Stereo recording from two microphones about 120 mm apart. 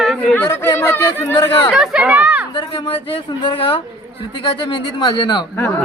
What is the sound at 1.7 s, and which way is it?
Speech, 5° right (ahead or behind).